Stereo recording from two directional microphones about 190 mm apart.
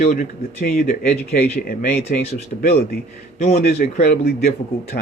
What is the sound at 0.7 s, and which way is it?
A man's voice, 50° left (ahead or behind).